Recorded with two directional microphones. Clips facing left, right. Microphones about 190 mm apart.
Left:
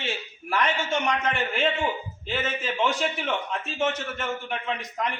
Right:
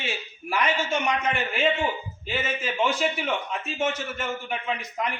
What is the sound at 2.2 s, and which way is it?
A man's voice, 5° right (ahead or behind).